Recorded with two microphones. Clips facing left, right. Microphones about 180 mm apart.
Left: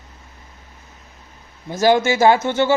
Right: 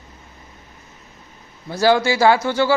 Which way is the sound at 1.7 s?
20° left (ahead or behind).